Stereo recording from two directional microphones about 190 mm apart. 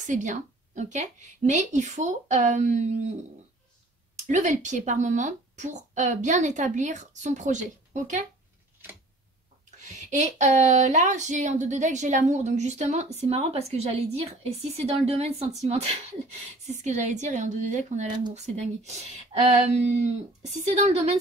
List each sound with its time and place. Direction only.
0.0 s speech: 40° right (ahead or behind)
4.3 s speech: 40° right (ahead or behind)
9.8 s speech: 40° right (ahead or behind)
20.4 s speech: 35° right (ahead or behind)